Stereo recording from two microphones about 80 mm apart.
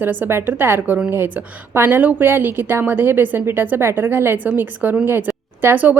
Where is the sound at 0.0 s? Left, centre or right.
Right.